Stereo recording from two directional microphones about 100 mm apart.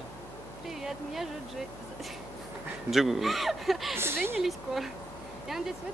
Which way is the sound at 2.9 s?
Centre (ahead or behind).